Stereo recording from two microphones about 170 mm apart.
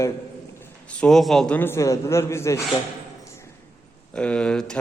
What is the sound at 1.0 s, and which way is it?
A man's voice, centre (ahead or behind).